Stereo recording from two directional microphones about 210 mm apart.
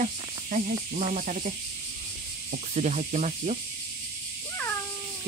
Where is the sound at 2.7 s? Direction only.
35° right (ahead or behind).